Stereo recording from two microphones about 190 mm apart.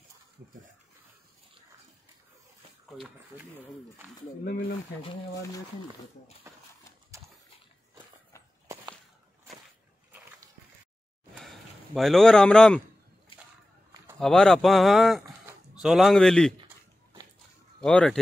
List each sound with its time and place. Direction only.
4.5 s speech: 55° left (ahead or behind)
11.3 s a sound: centre (ahead or behind)
14.2 s speech: 5° left (ahead or behind)
17.7 s speech: 5° left (ahead or behind)